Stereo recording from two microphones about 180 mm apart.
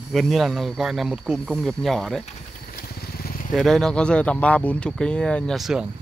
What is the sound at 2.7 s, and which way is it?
Vehicle, 60° left (ahead or behind).